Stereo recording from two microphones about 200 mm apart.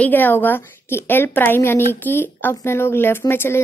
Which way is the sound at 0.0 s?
10° left (ahead or behind).